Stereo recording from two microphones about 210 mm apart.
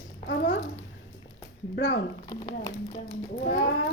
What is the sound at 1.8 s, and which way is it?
Speech, 60° left (ahead or behind).